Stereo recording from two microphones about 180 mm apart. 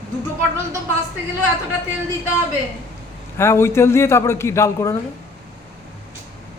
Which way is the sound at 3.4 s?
15° left (ahead or behind).